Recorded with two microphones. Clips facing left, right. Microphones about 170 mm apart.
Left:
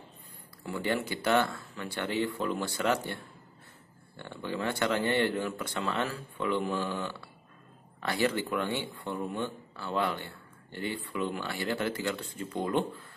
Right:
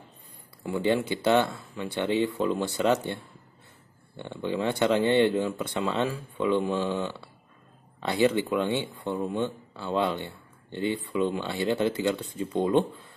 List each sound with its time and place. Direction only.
0.7 s speech: 20° right (ahead or behind)
4.2 s speech: 20° right (ahead or behind)